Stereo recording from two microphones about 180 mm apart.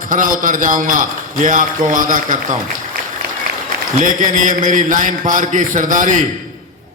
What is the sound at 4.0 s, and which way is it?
A man's voice, 45° right (ahead or behind).